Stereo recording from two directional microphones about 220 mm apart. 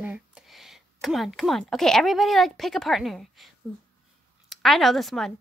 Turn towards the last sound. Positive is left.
turn(degrees=0)  # may be behind; listen again after turning